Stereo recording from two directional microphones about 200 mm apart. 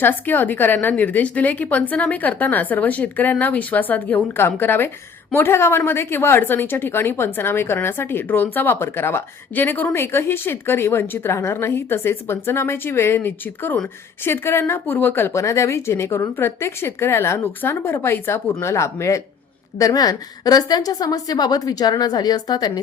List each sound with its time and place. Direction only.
0.0 s a woman's voice: 10° left (ahead or behind)